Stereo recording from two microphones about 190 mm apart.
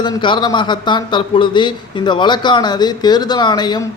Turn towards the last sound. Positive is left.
turn(degrees=20)  # may be behind; listen again after turning